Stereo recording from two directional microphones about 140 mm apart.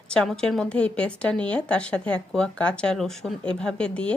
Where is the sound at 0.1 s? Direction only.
5° left (ahead or behind).